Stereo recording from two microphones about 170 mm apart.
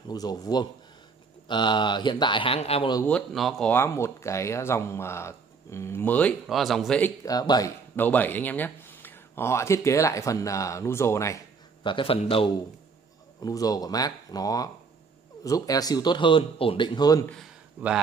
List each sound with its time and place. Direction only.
0.1 s speech: 25° left (ahead or behind)
3.1 s speech: 5° left (ahead or behind)
3.7 s speech: 15° left (ahead or behind)
7.2 s speech: 20° left (ahead or behind)
11.8 s a man's voice: 30° left (ahead or behind)
13.4 s speech: 20° left (ahead or behind)